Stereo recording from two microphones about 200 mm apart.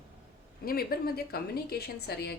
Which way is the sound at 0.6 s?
50° left (ahead or behind).